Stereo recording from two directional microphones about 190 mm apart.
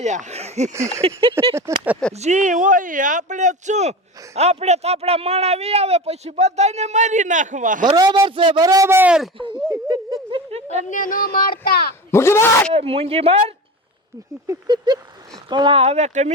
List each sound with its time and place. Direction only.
0.0 s a man's voice: 40° right (ahead or behind)
7.9 s a man's voice: 20° right (ahead or behind); by 9.3 s 5° right (ahead or behind)
9.6 s speech: 20° right (ahead or behind)
10.5 s a sound: 35° right (ahead or behind)
10.8 s speech: 45° left (ahead or behind)
12.1 s a man's voice: 15° left (ahead or behind)
12.7 s speech: 30° right (ahead or behind)
14.4 s a man's voice: 20° right (ahead or behind); by 16.3 s 35° right (ahead or behind)